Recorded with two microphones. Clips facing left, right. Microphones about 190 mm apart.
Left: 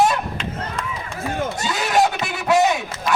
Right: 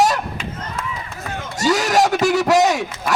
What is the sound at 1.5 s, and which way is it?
A man's voice, 40° right (ahead or behind).